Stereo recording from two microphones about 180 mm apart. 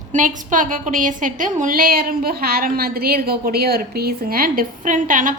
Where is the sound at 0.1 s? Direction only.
45° right (ahead or behind).